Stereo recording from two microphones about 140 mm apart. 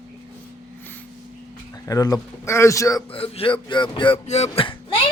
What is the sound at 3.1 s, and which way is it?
Speech, 40° left (ahead or behind).